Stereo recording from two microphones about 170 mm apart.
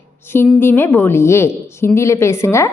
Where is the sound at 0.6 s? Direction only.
15° left (ahead or behind).